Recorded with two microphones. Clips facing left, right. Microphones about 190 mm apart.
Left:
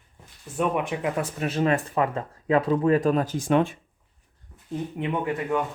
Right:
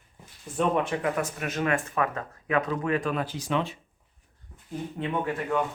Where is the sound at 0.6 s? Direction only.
15° left (ahead or behind).